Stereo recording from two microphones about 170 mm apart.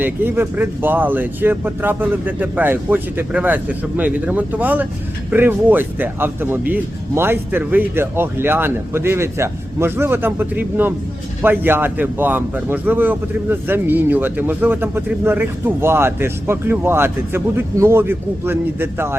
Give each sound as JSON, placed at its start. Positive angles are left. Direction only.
{"t": 0.0, "sound": "a man's voice", "side_deg": -10}